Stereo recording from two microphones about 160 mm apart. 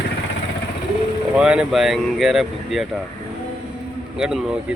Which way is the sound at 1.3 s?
5° right (ahead or behind).